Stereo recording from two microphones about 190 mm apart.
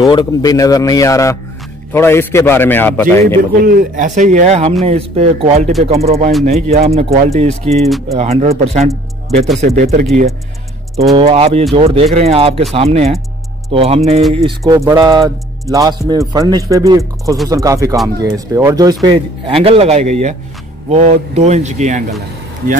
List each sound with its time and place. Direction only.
0.0 s a man's voice: 20° left (ahead or behind)
3.6 s speech: 45° right (ahead or behind)
11.1 s speech: 30° right (ahead or behind)
14.9 s speech: 15° right (ahead or behind); by 22.1 s 40° right (ahead or behind)